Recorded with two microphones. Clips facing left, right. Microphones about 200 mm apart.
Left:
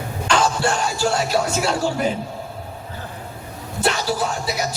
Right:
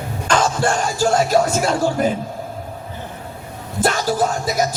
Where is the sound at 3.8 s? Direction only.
45° right (ahead or behind).